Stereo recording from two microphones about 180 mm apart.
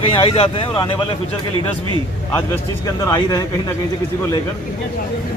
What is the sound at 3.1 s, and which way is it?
Speech, 20° left (ahead or behind).